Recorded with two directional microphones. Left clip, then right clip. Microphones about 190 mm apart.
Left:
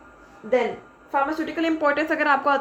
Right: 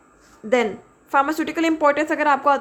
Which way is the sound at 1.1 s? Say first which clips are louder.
Right 4 dB; 35° right (ahead or behind).